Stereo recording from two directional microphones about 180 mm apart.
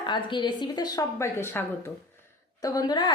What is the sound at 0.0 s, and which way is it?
Speech, 25° left (ahead or behind).